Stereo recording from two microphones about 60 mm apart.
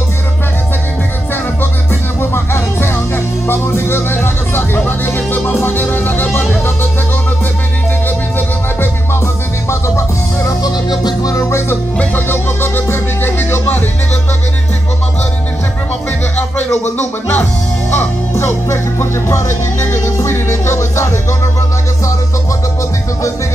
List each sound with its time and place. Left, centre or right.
2.3 s music: left
8.4 s music: left
9.7 s music: left
17.9 s music: left